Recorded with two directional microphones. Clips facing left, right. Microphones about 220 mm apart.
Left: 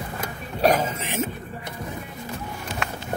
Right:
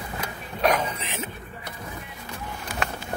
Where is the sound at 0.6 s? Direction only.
40° left (ahead or behind).